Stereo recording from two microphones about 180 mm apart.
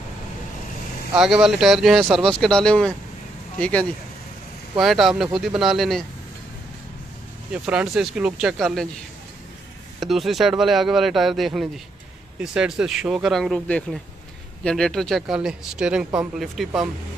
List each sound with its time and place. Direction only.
1.1 s speech: 5° right (ahead or behind)
7.5 s speech: 5° right (ahead or behind)
9.9 s speech: centre (ahead or behind)